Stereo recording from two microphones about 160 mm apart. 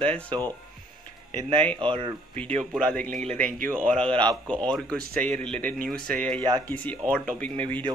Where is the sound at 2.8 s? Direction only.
10° left (ahead or behind).